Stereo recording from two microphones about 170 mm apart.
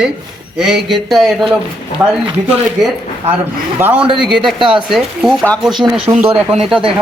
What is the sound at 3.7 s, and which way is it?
Speech, 10° right (ahead or behind).